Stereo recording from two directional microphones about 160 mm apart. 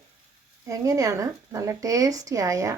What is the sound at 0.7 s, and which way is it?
Speech, 20° right (ahead or behind).